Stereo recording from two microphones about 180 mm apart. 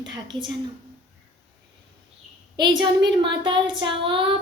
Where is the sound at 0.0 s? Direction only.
25° right (ahead or behind).